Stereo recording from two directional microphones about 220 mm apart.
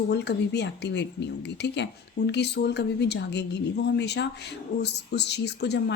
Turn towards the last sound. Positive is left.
turn(degrees=50)  # may be behind; listen again after turning